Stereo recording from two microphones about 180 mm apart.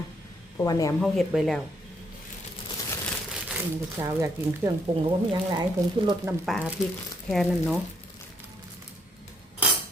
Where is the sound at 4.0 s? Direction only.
20° right (ahead or behind).